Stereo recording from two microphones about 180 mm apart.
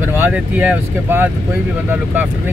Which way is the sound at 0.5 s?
10° right (ahead or behind).